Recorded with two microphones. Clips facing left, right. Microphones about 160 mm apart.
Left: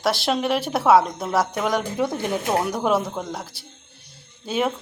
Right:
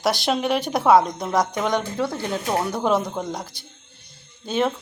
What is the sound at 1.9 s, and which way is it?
Speech, 20° left (ahead or behind).